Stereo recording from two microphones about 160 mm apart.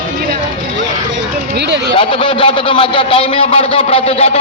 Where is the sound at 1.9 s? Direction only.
30° left (ahead or behind).